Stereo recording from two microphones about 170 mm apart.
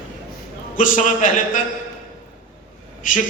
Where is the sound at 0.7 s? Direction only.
50° left (ahead or behind).